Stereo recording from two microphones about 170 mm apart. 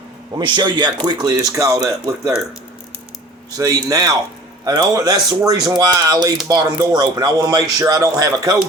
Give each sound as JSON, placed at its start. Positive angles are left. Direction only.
{"t": 0.3, "sound": "a man's voice", "side_deg": -25}
{"t": 3.6, "sound": "a man's voice", "side_deg": -20}